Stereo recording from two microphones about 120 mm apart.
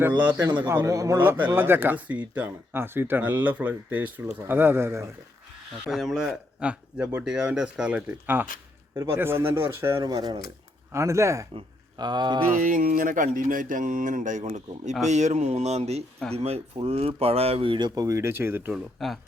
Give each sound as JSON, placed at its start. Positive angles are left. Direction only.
{"t": 0.6, "sound": "speech", "side_deg": -15}
{"t": 0.9, "sound": "speech", "side_deg": -25}
{"t": 5.9, "sound": "speech", "side_deg": 0}
{"t": 10.0, "sound": "speech", "side_deg": -35}
{"t": 11.9, "sound": "speech", "side_deg": -35}
{"t": 12.5, "sound": "a sound", "side_deg": -90}
{"t": 15.0, "sound": "speech", "side_deg": -75}
{"t": 18.7, "sound": "speech", "side_deg": 0}